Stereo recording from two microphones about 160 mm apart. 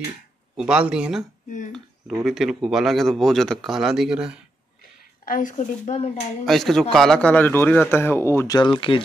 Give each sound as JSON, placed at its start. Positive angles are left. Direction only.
{"t": 0.6, "sound": "speech", "side_deg": -5}
{"t": 2.2, "sound": "speech", "side_deg": 0}
{"t": 5.2, "sound": "speech", "side_deg": 55}
{"t": 6.4, "sound": "a man's voice", "side_deg": 0}